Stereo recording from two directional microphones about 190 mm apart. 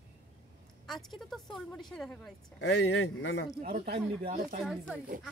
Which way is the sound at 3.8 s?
50° right (ahead or behind).